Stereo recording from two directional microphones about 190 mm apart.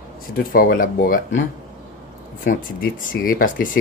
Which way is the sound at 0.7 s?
50° left (ahead or behind).